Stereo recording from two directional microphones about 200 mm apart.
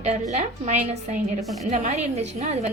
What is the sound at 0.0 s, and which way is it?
A woman's voice, 35° right (ahead or behind).